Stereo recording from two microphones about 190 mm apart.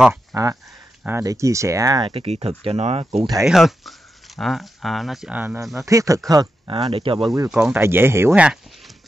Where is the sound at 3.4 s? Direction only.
Centre (ahead or behind).